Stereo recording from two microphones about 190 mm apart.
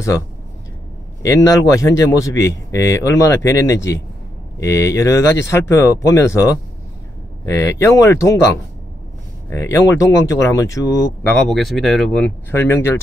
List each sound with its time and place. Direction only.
1.2 s speech: 15° left (ahead or behind)
11.3 s speech: centre (ahead or behind)